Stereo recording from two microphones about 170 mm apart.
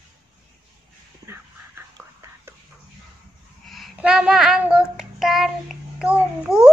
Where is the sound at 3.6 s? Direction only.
Centre (ahead or behind).